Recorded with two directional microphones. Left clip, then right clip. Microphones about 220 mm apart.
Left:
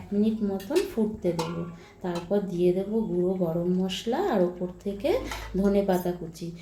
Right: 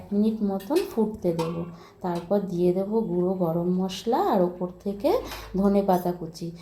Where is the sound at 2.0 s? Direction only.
20° right (ahead or behind).